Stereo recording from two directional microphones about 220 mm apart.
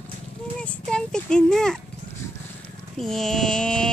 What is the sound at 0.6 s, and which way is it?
Mantra, 5° left (ahead or behind).